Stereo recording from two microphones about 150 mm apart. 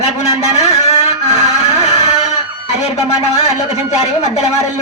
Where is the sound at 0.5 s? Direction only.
45° left (ahead or behind).